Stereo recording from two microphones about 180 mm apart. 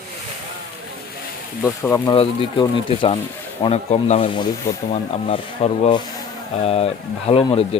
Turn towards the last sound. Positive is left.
turn(degrees=30)  # may be behind; listen again after turning